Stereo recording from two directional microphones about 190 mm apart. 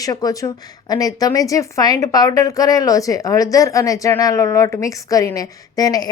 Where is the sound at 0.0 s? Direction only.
20° left (ahead or behind).